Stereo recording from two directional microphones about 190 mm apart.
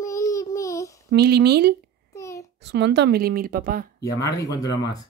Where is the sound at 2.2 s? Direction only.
15° left (ahead or behind).